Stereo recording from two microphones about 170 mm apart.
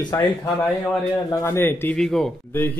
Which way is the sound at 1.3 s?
15° left (ahead or behind).